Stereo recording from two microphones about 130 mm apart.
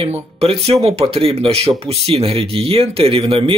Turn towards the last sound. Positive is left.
turn(degrees=-45)  # may be behind; listen again after turning